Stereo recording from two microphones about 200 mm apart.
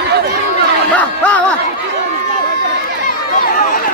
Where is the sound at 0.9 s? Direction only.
5° left (ahead or behind).